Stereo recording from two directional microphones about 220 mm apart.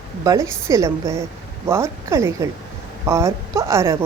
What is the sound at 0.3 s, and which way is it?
A woman's voice, 15° right (ahead or behind).